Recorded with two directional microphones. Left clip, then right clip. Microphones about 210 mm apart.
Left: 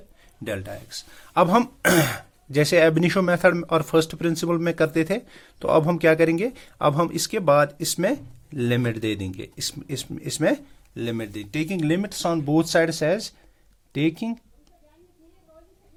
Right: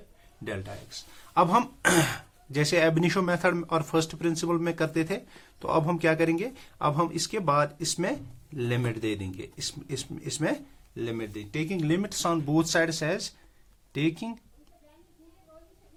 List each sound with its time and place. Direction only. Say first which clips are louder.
0.4 s speech: left 6 dB; 45° left (ahead or behind); by 14.3 s 25° left (ahead or behind)